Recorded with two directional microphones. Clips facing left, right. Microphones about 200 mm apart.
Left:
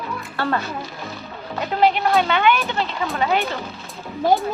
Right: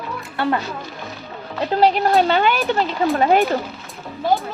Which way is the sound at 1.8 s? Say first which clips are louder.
Right 2 dB; 35° right (ahead or behind).